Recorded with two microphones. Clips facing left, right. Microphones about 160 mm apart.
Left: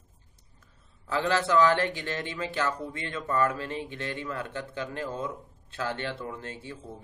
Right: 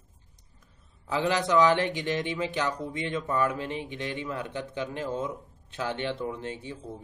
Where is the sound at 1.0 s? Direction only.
15° right (ahead or behind).